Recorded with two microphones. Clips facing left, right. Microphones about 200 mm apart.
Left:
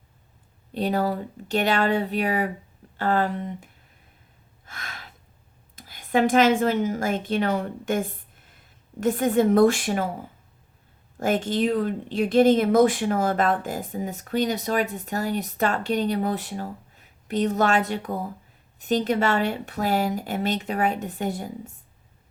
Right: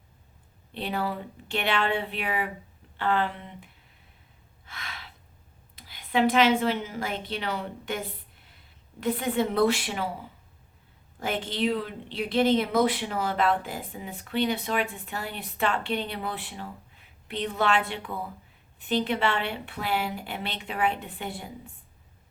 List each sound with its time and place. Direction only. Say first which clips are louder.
0.7 s speech: left 6 dB; 40° left (ahead or behind)
4.6 s gasp: left 2 dB; 45° left (ahead or behind)
5.7 s a woman's voice: left 4 dB; 45° left (ahead or behind)